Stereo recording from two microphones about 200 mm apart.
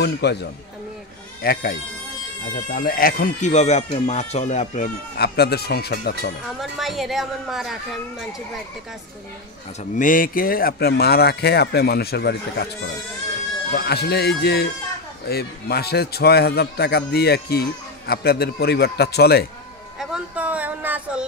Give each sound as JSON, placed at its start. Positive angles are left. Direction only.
{"t": 0.0, "sound": "a man's voice", "side_deg": 55}
{"t": 5.1, "sound": "a man's voice", "side_deg": 50}
{"t": 6.6, "sound": "a woman's voice", "side_deg": 0}
{"t": 9.9, "sound": "a man's voice", "side_deg": 40}
{"t": 13.7, "sound": "a man's voice", "side_deg": 55}
{"t": 20.0, "sound": "a sound", "side_deg": -5}